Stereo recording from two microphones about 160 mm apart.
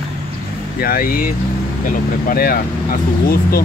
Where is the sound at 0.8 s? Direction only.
65° left (ahead or behind).